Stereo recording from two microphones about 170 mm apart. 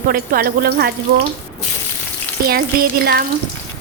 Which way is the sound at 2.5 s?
65° right (ahead or behind).